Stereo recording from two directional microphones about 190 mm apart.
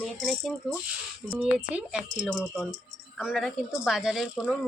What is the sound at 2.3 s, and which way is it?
A woman's voice, 5° left (ahead or behind).